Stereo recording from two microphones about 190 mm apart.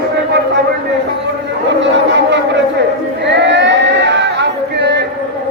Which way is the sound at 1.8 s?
70° right (ahead or behind).